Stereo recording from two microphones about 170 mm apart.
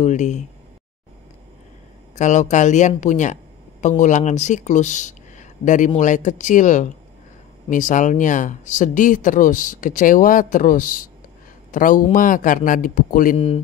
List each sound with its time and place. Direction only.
0.0 s speech: 45° left (ahead or behind)
2.1 s speech: 45° left (ahead or behind)